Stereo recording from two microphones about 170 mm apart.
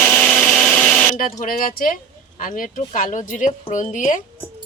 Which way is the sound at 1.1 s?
50° left (ahead or behind).